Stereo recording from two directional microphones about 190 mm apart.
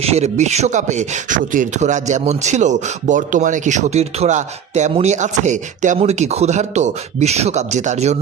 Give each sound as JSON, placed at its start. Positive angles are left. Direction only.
{"t": 0.0, "sound": "speech", "side_deg": -35}